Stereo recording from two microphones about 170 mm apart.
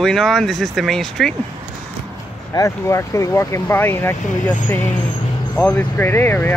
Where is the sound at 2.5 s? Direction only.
20° left (ahead or behind).